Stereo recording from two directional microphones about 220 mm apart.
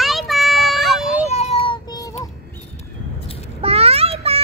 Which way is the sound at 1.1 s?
30° left (ahead or behind).